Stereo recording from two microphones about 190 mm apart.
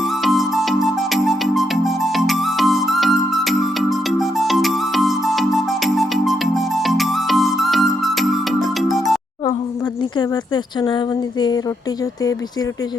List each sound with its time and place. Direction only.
0.2 s music: centre (ahead or behind)
10.2 s speech: 25° left (ahead or behind)